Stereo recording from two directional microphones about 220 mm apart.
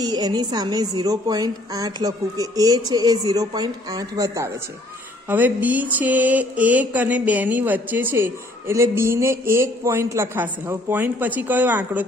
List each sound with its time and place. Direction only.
0.0 s mantra: 20° right (ahead or behind)